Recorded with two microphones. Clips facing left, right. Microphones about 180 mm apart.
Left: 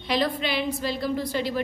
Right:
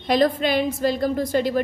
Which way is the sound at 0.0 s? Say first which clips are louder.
Right 6 dB; 45° right (ahead or behind).